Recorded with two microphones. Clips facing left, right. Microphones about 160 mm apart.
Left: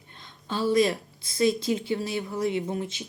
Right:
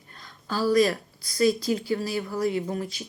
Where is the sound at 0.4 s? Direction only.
25° left (ahead or behind).